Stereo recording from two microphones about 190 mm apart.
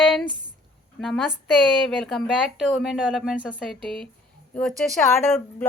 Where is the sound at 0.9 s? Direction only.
Centre (ahead or behind).